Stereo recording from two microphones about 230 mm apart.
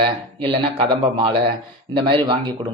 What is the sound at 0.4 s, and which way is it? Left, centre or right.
Speech, right.